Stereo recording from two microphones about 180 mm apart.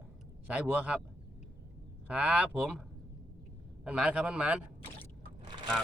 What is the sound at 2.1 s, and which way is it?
Speech, 5° right (ahead or behind).